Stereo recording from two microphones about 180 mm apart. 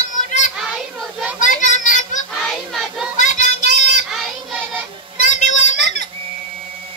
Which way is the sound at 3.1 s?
45° left (ahead or behind).